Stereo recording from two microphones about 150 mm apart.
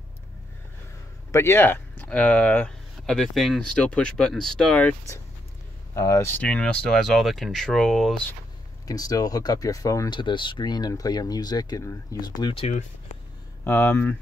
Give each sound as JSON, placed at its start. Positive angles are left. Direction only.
{"t": 1.3, "sound": "speech", "side_deg": 15}
{"t": 8.8, "sound": "speech", "side_deg": 25}
{"t": 12.5, "sound": "speech", "side_deg": 45}
{"t": 13.7, "sound": "speech", "side_deg": 15}